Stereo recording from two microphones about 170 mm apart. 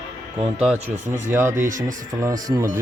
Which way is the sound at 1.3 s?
15° right (ahead or behind).